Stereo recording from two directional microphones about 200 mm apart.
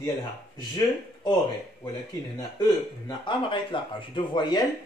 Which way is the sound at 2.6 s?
20° left (ahead or behind).